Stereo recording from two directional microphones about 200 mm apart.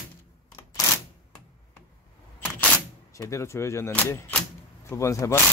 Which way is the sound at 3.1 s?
15° left (ahead or behind).